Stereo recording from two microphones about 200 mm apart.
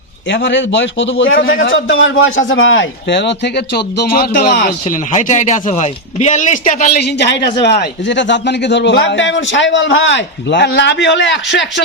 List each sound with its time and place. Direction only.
0.3 s a man's voice: 65° left (ahead or behind); by 6.9 s 35° left (ahead or behind)
6.9 s a man's voice: 55° left (ahead or behind)